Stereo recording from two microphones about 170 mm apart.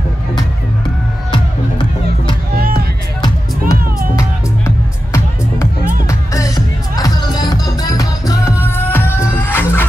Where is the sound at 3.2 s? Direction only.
20° left (ahead or behind).